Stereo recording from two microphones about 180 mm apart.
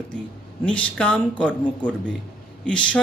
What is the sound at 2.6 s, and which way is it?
Speech, 5° left (ahead or behind).